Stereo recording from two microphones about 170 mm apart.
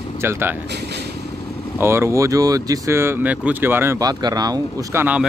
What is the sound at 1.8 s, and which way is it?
Speech, 15° right (ahead or behind).